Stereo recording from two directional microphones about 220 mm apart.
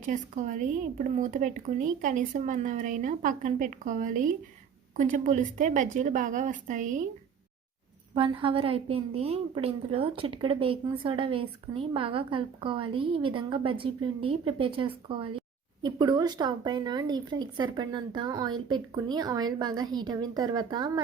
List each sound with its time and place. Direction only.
0.0 s speech: 35° right (ahead or behind)
8.1 s a woman's voice: 25° right (ahead or behind)